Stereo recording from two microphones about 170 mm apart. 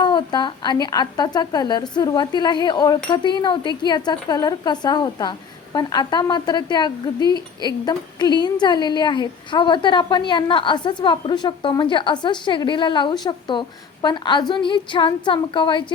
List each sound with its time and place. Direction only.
0.0 s a woman's voice: 25° left (ahead or behind)